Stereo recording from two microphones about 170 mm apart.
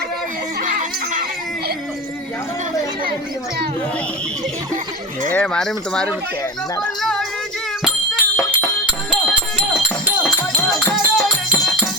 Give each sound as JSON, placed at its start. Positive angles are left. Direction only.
{"t": 0.6, "sound": "neigh", "side_deg": -50}
{"t": 5.3, "sound": "speech", "side_deg": 5}
{"t": 8.2, "sound": "music", "side_deg": 10}
{"t": 9.0, "sound": "music", "side_deg": -5}
{"t": 10.8, "sound": "music", "side_deg": 0}